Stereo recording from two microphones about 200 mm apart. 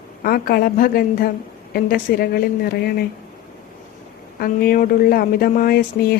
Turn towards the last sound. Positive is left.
turn(degrees=50)  # may be behind; listen again after turning